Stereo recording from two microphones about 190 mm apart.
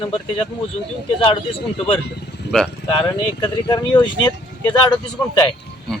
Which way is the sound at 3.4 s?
25° left (ahead or behind).